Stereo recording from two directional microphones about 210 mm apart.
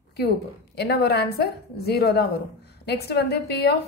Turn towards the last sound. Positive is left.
turn(degrees=50)  # may be behind; listen again after turning